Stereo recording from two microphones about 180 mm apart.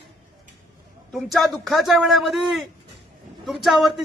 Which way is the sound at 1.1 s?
Centre (ahead or behind).